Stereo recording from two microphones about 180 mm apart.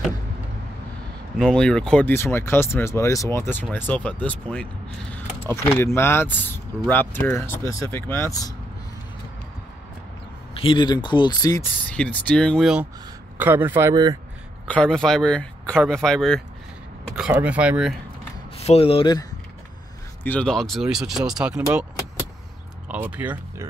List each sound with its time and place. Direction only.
1.4 s speech: 5° left (ahead or behind); by 8.5 s 20° left (ahead or behind)
10.5 s speech: 30° left (ahead or behind)
11.9 s speech: 5° left (ahead or behind)
13.4 s speech: 10° right (ahead or behind)
14.7 s speech: 5° left (ahead or behind)
18.6 s speech: 35° left (ahead or behind)
20.2 s speech: 5° left (ahead or behind)
22.8 s speech: 10° right (ahead or behind)